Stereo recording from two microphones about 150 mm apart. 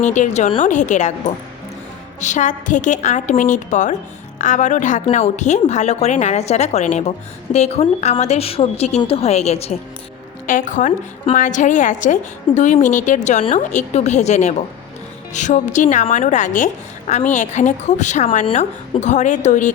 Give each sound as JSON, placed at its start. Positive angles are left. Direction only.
{"t": 0.0, "sound": "a woman's voice", "side_deg": 55}
{"t": 2.2, "sound": "a woman's voice", "side_deg": 55}
{"t": 10.4, "sound": "a woman's voice", "side_deg": 60}